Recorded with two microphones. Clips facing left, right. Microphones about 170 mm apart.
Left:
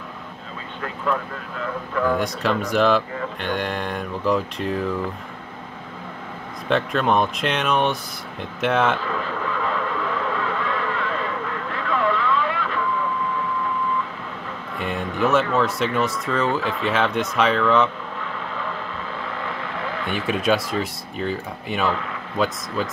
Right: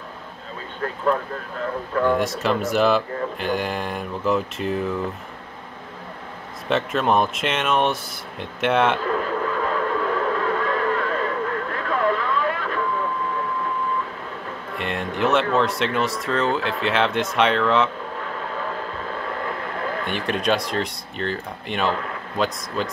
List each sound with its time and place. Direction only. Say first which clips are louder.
2.1 s speech: right 1 dB; centre (ahead or behind)
6.7 s speech: even; centre (ahead or behind)
9.0 s radio: right 3 dB; 45° right (ahead or behind)
14.8 s speech: left 1 dB; centre (ahead or behind)
20.1 s speech: left 2 dB; centre (ahead or behind)